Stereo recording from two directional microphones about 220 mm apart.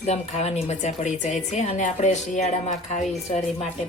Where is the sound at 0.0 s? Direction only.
30° left (ahead or behind).